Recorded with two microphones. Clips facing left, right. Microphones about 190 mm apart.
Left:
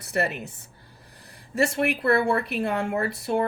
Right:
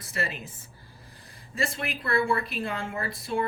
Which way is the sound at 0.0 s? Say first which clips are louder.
Left 7 dB; 65° left (ahead or behind).